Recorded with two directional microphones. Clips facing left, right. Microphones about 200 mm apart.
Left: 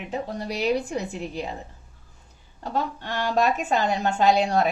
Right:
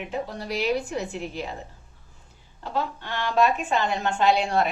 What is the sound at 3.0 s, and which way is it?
A woman's voice, 40° left (ahead or behind).